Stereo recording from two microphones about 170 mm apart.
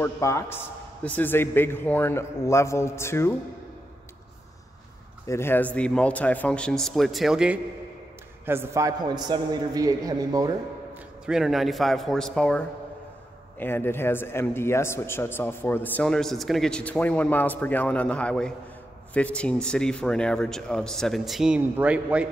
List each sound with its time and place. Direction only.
0.0 s a man's voice: 15° left (ahead or behind)
5.2 s a man's voice: 15° left (ahead or behind); by 10.5 s 20° right (ahead or behind)
11.2 s a man's voice: 5° right (ahead or behind)